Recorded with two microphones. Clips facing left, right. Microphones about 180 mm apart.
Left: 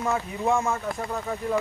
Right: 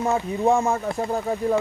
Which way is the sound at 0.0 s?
25° right (ahead or behind).